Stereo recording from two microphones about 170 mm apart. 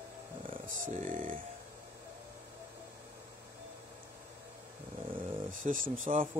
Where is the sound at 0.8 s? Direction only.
50° right (ahead or behind).